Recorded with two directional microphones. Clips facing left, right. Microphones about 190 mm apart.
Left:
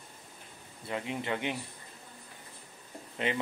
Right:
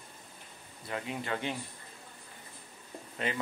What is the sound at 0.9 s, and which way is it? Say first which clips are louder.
Speech: left 2 dB; 20° left (ahead or behind).